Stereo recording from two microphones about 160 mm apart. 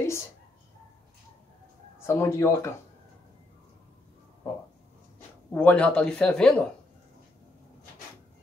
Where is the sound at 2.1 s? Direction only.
15° left (ahead or behind).